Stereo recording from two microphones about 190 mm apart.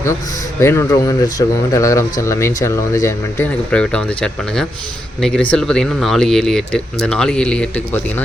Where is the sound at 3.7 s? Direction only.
5° left (ahead or behind).